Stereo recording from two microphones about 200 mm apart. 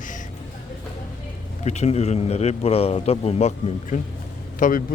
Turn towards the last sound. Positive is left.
turn(degrees=40)  # may be behind; listen again after turning